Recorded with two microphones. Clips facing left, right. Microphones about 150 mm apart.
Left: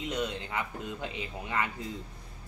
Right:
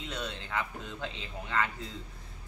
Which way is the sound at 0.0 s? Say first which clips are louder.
Left 5 dB; 15° left (ahead or behind).